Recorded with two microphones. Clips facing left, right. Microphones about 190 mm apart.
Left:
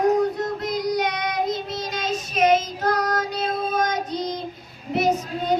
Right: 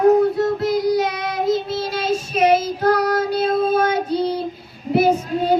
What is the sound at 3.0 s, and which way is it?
Child singing, 30° right (ahead or behind).